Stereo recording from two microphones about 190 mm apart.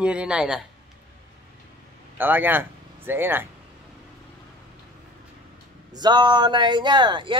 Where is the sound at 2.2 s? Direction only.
10° right (ahead or behind).